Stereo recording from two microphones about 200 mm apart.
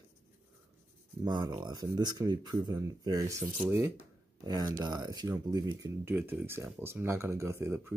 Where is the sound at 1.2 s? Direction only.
20° right (ahead or behind).